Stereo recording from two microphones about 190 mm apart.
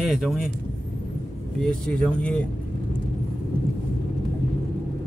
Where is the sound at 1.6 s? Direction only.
5° left (ahead or behind).